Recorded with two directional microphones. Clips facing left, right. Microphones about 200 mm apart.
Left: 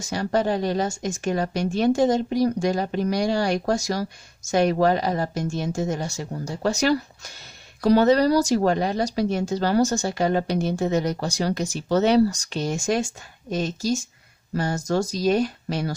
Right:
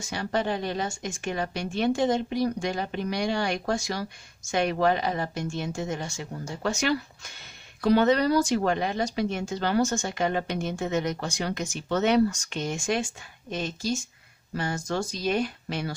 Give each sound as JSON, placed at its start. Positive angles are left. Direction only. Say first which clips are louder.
{"t": 0.0, "sound": "speech", "louder": "left 5 dB", "side_deg": 40}